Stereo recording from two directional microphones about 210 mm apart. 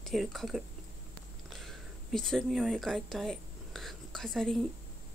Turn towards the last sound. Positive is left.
turn(degrees=0)  # may be behind; listen again after turning